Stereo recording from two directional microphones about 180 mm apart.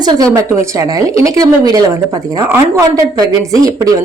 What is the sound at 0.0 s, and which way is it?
Speech, 20° right (ahead or behind).